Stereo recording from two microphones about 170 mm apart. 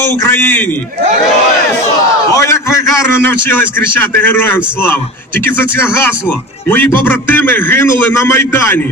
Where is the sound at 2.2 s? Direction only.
15° left (ahead or behind).